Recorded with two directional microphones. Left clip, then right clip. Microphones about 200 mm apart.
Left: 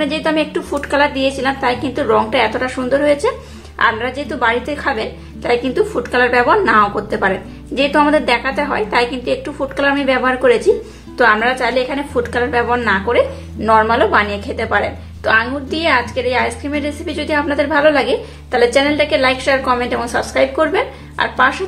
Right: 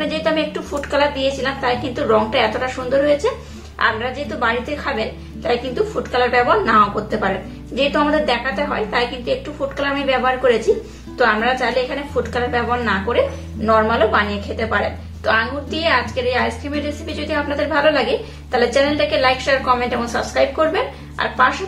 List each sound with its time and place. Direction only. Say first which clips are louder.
0.0 s a woman's voice: left 2 dB; 35° left (ahead or behind)